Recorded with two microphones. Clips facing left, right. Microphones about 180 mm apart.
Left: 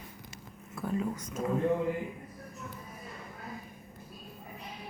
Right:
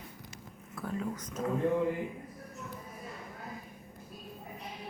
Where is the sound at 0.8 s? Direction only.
10° left (ahead or behind).